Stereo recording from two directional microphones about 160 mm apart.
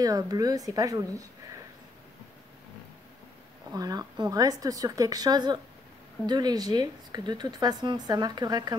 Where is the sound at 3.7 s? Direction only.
25° right (ahead or behind).